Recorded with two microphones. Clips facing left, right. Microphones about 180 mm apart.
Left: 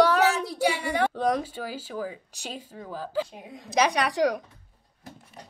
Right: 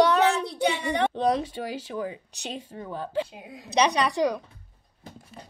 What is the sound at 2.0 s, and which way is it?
Speech, 25° right (ahead or behind).